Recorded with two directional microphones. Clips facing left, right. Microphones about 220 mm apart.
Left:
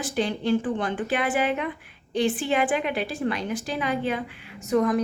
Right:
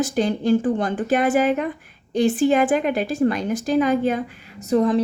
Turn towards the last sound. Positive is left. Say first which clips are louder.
# right 4 dB
turn(degrees=-30)  # may be behind; listen again after turning